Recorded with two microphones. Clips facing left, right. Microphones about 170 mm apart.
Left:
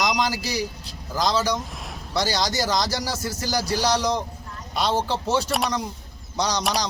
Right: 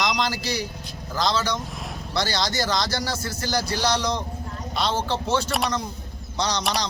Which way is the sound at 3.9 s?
40° left (ahead or behind).